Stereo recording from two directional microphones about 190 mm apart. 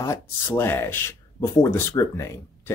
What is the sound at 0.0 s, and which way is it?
Speech, 15° left (ahead or behind).